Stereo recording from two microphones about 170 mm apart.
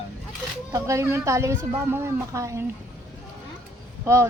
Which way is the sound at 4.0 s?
15° right (ahead or behind).